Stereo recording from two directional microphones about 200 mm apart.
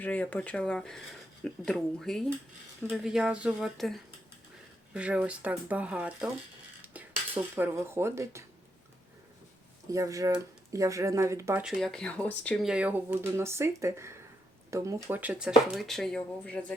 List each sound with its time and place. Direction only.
0.0 s speech: 10° left (ahead or behind)
7.5 s speech: 10° right (ahead or behind)
9.9 s speech: 15° right (ahead or behind)
11.6 s speech: centre (ahead or behind)